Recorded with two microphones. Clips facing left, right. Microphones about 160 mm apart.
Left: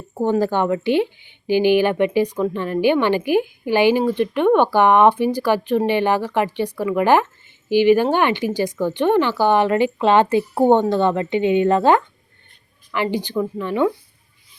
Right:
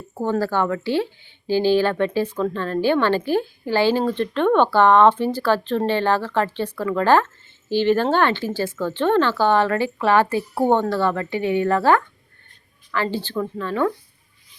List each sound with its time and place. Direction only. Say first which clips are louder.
0.1 s speech: left 3 dB; 15° left (ahead or behind)